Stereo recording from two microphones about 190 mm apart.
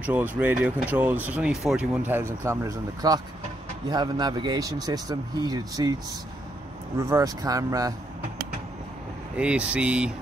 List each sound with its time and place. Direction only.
0.0 s a man's voice: 10° right (ahead or behind)
7.0 s speech: 15° right (ahead or behind)
9.4 s speech: 5° right (ahead or behind)